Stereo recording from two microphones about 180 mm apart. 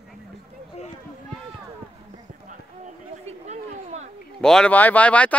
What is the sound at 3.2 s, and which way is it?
Chatter, 40° right (ahead or behind).